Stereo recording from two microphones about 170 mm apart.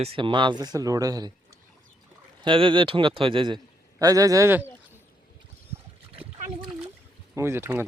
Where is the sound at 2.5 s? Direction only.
30° right (ahead or behind); by 4.7 s 15° right (ahead or behind).